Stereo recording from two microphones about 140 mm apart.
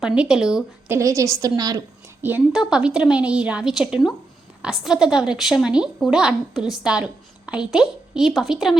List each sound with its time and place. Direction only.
0.0 s a woman's voice: 5° right (ahead or behind)
0.9 s a woman's voice: 20° right (ahead or behind)
2.2 s a woman's voice: 10° right (ahead or behind)